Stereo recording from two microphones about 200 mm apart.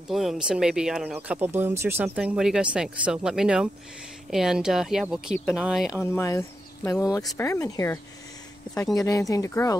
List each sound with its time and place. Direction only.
0.1 s speech: centre (ahead or behind)
6.1 s speech: 15° left (ahead or behind)